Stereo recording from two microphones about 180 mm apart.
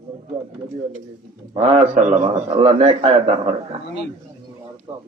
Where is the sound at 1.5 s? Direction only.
30° right (ahead or behind).